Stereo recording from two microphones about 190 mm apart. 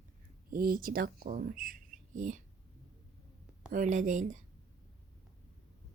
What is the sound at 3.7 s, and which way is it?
Speech, 40° right (ahead or behind).